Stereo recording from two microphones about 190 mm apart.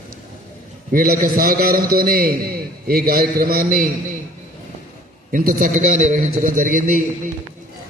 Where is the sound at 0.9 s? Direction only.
50° right (ahead or behind).